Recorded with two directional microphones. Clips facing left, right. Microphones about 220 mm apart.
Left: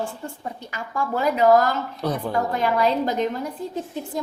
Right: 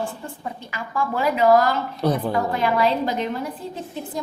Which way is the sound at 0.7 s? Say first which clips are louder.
Right 1 dB; 45° left (ahead or behind).